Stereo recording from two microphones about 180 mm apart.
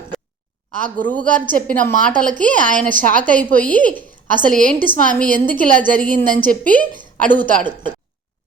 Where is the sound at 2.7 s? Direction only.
45° right (ahead or behind).